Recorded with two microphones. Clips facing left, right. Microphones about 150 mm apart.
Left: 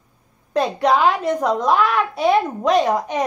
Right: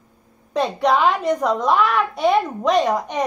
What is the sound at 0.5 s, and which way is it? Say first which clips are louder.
A woman's voice: left 1 dB; centre (ahead or behind).